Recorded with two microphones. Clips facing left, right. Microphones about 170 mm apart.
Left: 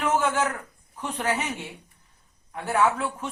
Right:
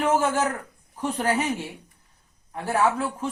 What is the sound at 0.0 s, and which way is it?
Speech, 35° right (ahead or behind).